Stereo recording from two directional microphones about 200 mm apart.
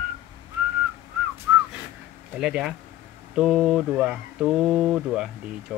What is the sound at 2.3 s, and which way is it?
Speech, 5° right (ahead or behind).